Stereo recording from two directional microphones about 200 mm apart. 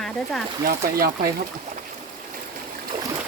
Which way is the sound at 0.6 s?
45° right (ahead or behind).